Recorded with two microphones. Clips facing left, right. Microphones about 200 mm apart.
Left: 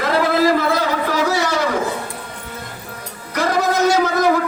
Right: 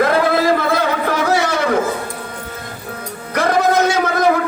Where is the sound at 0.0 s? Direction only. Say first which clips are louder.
Right 2 dB; 50° right (ahead or behind).